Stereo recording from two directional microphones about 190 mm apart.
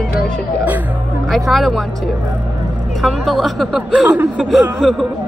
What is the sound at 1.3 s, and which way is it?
A woman's voice, centre (ahead or behind).